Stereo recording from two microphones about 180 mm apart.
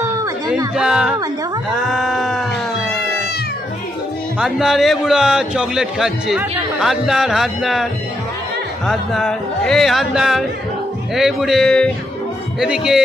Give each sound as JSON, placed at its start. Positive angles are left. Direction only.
{"t": 0.0, "sound": "music", "side_deg": -15}
{"t": 0.7, "sound": "speech", "side_deg": -5}
{"t": 1.7, "sound": "a sound", "side_deg": 0}
{"t": 4.4, "sound": "speech", "side_deg": 0}